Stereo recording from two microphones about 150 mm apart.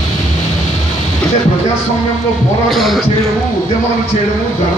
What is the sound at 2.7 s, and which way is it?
Speech, centre (ahead or behind).